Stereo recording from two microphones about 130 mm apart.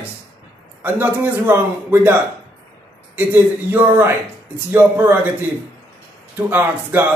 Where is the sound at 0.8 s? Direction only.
15° right (ahead or behind).